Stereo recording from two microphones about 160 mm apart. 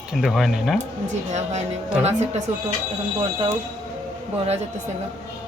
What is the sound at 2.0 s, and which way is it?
Speech, 45° right (ahead or behind).